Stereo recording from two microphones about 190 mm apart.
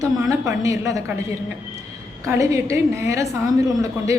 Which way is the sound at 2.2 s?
15° right (ahead or behind).